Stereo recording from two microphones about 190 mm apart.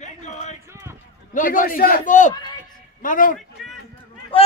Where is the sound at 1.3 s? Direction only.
45° left (ahead or behind).